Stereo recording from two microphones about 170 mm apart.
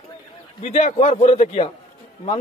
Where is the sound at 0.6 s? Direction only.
40° left (ahead or behind).